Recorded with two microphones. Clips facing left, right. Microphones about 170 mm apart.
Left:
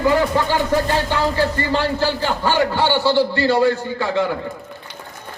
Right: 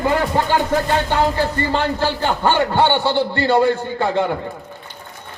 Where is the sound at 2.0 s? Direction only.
55° right (ahead or behind).